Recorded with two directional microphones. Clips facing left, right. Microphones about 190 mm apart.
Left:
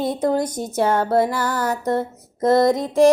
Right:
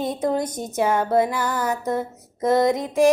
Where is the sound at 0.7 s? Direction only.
15° right (ahead or behind).